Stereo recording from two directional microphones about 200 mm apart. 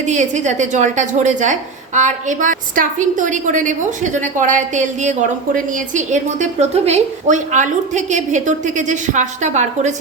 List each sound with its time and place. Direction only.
0.0 s speech: 35° right (ahead or behind)